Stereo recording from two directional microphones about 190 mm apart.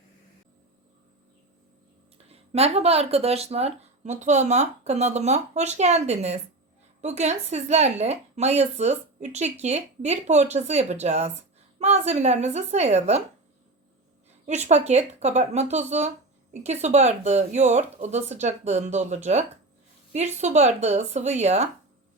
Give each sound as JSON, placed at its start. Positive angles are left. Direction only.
{"t": 2.3, "sound": "a woman's voice", "side_deg": -30}
{"t": 14.4, "sound": "a woman's voice", "side_deg": -35}